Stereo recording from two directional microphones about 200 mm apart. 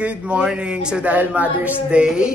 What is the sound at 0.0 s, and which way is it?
Speech, 5° right (ahead or behind).